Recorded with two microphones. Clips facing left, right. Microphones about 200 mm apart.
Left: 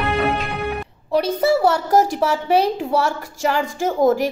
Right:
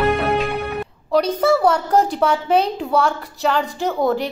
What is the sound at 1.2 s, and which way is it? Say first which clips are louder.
A woman's voice: left 1 dB; 5° left (ahead or behind).